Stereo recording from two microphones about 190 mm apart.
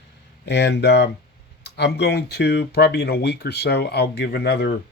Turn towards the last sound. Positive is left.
turn(degrees=55)  # may be behind; listen again after turning